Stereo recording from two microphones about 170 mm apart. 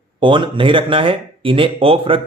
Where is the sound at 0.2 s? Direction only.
30° right (ahead or behind).